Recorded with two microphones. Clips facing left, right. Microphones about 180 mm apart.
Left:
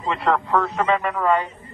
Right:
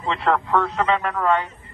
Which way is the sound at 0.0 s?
5° left (ahead or behind).